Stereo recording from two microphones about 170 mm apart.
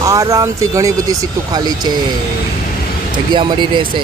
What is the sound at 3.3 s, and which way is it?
Speech, 30° right (ahead or behind).